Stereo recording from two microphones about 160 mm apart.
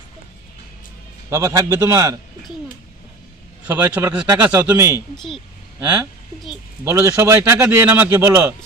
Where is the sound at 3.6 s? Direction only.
15° right (ahead or behind).